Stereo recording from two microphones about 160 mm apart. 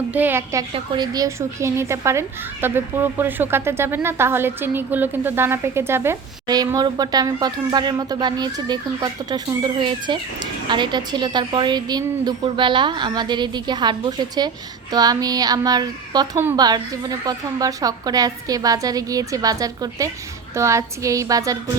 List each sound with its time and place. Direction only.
0.1 s a woman's voice: 10° right (ahead or behind)
0.7 s speech: 25° right (ahead or behind)